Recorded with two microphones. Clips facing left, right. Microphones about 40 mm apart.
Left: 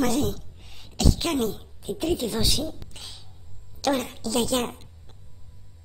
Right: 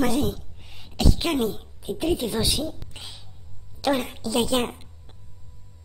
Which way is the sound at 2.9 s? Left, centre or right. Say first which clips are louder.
Right 2 dB; centre.